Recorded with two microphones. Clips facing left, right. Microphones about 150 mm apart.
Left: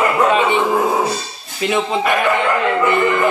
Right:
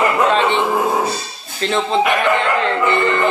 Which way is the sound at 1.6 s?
10° left (ahead or behind).